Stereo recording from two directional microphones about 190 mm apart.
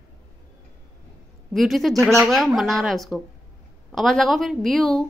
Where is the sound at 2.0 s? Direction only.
15° right (ahead or behind).